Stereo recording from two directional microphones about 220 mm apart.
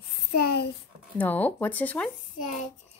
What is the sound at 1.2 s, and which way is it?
Speech, 10° left (ahead or behind).